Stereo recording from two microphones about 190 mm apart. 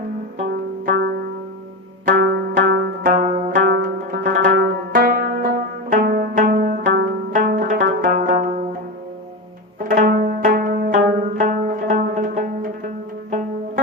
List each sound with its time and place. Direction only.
2.1 s music: 60° right (ahead or behind)
6.8 s music: 60° right (ahead or behind)
7.3 s zither: 45° right (ahead or behind)
9.9 s pizzicato: 45° right (ahead or behind)
11.1 s music: 45° right (ahead or behind)